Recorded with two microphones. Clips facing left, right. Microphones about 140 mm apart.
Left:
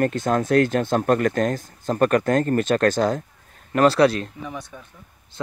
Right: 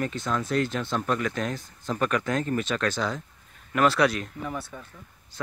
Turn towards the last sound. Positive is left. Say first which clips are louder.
# even
turn(degrees=5)  # may be behind; listen again after turning